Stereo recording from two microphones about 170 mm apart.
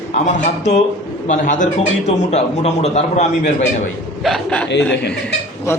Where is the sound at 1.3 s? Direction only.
45° left (ahead or behind).